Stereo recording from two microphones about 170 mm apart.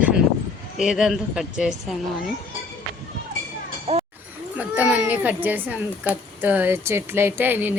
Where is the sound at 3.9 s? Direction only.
35° right (ahead or behind).